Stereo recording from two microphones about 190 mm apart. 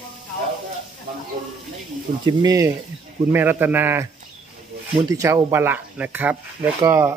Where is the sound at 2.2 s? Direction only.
20° right (ahead or behind).